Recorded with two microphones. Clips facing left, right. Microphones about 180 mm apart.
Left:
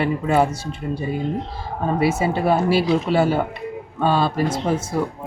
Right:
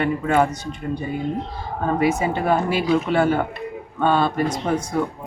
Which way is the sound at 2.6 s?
35° left (ahead or behind).